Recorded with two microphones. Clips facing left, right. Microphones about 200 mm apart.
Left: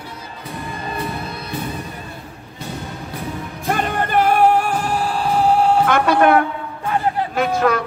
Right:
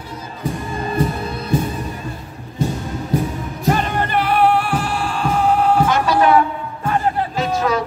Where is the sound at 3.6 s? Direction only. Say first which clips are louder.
Right 2 dB; 50° left (ahead or behind); by 5.7 s 30° left (ahead or behind).